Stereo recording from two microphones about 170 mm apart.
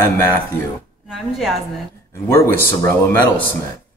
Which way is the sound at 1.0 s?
5° right (ahead or behind).